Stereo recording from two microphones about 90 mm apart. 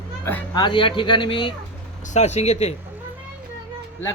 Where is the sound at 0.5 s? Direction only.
60° left (ahead or behind).